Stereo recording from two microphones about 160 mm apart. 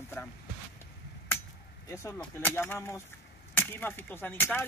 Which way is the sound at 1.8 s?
15° left (ahead or behind).